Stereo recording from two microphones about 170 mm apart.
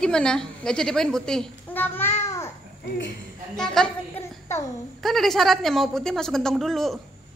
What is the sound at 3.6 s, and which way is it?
Speech, 5° left (ahead or behind).